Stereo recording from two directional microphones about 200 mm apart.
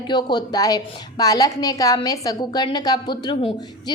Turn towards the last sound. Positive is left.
turn(degrees=25)  # may be behind; listen again after turning